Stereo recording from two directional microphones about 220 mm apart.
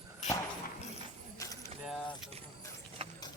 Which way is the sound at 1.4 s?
15° left (ahead or behind).